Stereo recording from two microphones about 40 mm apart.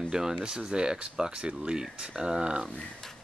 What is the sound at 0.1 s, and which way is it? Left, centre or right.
Speech, centre.